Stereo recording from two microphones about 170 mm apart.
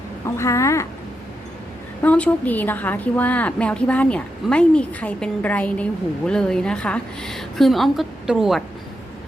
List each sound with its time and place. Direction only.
0.3 s a woman's voice: 15° left (ahead or behind)
2.0 s a woman's voice: 10° left (ahead or behind)